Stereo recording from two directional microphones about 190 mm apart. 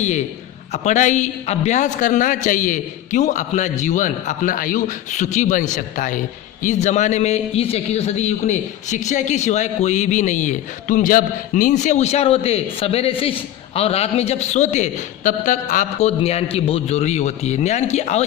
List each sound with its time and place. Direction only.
0.7 s a man's voice: 40° left (ahead or behind)